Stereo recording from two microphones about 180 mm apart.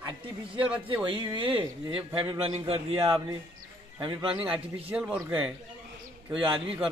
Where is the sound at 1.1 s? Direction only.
30° right (ahead or behind).